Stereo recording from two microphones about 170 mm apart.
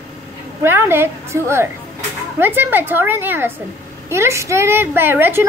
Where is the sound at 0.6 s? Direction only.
15° right (ahead or behind).